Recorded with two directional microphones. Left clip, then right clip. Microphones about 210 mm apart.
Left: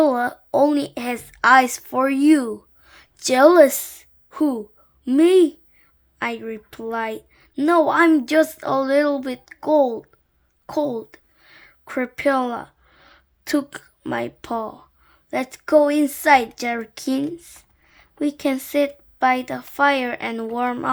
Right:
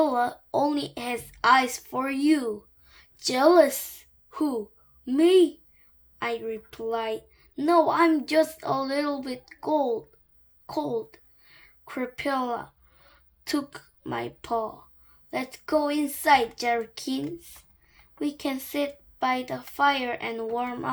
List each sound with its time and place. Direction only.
0.0 s a woman's voice: 45° left (ahead or behind)